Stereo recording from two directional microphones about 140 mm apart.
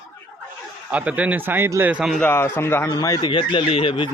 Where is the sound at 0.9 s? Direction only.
10° right (ahead or behind).